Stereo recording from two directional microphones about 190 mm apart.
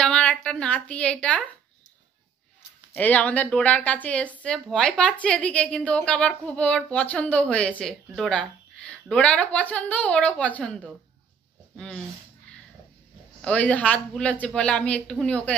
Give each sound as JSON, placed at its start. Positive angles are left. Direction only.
{"t": 0.0, "sound": "a woman's voice", "side_deg": 5}
{"t": 2.9, "sound": "a woman's voice", "side_deg": 10}
{"t": 13.4, "sound": "a woman's voice", "side_deg": 5}